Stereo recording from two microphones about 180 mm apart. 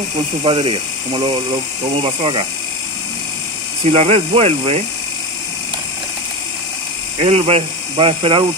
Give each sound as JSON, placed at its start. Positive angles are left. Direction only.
{"t": 0.4, "sound": "speech", "side_deg": -30}
{"t": 3.8, "sound": "speech", "side_deg": -35}
{"t": 7.2, "sound": "speech", "side_deg": -35}